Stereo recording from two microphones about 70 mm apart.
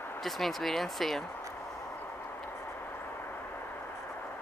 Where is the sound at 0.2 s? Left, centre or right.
Centre.